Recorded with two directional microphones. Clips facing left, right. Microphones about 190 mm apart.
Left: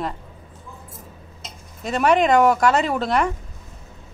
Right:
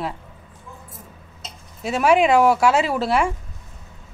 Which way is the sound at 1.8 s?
5° right (ahead or behind).